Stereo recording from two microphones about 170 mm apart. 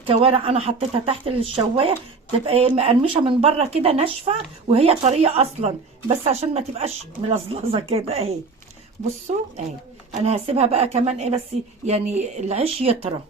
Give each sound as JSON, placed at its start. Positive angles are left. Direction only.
{"t": 0.0, "sound": "speech", "side_deg": -35}